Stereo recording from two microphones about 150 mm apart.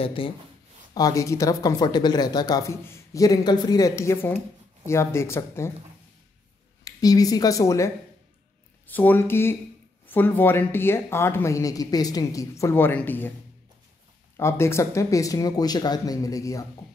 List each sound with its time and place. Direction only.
0.0 s speech: 35° left (ahead or behind)
0.9 s speech: 20° left (ahead or behind)
6.8 s speech: 25° left (ahead or behind)
14.3 s speech: 15° left (ahead or behind)